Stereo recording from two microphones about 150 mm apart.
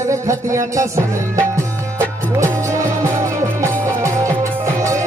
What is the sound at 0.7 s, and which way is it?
Music, 20° right (ahead or behind).